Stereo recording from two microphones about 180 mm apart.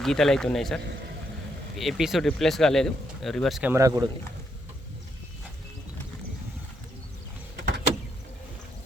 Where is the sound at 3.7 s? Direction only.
20° right (ahead or behind).